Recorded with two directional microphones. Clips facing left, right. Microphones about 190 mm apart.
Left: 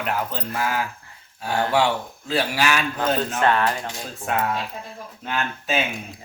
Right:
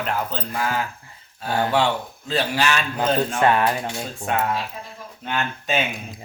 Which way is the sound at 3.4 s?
15° right (ahead or behind).